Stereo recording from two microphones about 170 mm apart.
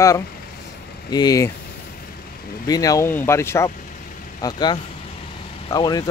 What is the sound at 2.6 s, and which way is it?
Speech, 20° left (ahead or behind).